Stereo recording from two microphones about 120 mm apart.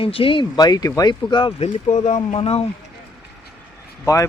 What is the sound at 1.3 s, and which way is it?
Speech, 40° left (ahead or behind).